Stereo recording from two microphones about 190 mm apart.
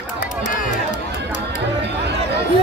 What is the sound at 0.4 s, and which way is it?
Music, 40° left (ahead or behind).